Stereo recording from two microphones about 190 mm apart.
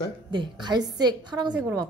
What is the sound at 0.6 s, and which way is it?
Speech, 20° right (ahead or behind).